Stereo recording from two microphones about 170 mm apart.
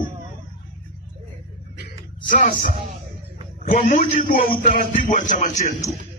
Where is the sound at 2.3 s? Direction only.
55° left (ahead or behind).